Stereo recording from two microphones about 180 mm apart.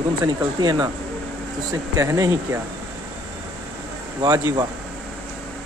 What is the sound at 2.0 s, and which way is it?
Speech, 15° right (ahead or behind).